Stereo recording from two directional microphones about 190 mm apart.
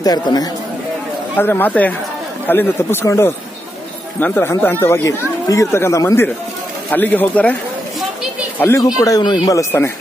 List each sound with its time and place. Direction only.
0.0 s speech: 20° left (ahead or behind)
8.5 s speech: 15° left (ahead or behind)